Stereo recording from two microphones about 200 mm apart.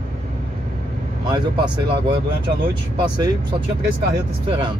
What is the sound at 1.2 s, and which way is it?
Speech, 20° right (ahead or behind).